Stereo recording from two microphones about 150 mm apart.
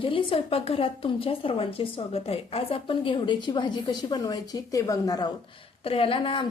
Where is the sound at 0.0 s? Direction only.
35° left (ahead or behind).